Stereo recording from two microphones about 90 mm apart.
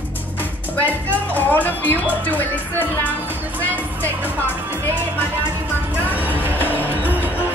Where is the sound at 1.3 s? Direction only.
20° left (ahead or behind).